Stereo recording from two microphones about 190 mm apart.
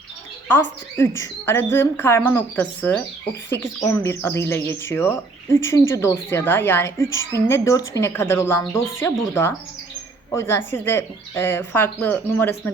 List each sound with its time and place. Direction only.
0.4 s speech: 10° left (ahead or behind)